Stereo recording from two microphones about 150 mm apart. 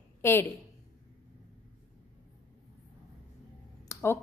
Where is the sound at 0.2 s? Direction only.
15° left (ahead or behind).